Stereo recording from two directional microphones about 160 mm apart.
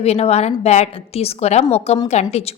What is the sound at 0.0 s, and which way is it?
A woman's voice, 40° left (ahead or behind).